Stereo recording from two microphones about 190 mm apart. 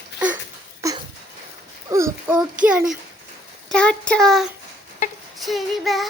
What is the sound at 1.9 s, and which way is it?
Speech, 15° right (ahead or behind).